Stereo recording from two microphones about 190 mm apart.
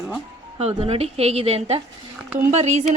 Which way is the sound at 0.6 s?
30° right (ahead or behind).